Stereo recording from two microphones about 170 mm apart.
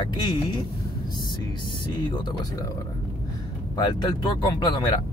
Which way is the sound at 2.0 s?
25° left (ahead or behind).